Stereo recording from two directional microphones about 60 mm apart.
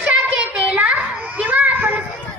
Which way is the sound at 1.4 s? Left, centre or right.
Right.